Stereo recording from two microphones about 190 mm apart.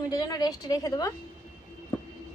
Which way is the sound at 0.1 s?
20° left (ahead or behind).